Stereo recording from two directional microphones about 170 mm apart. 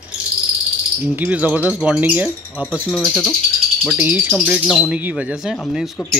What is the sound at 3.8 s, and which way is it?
Speech, 10° right (ahead or behind).